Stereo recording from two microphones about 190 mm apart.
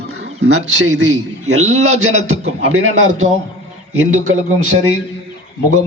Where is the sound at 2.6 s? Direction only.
90° right.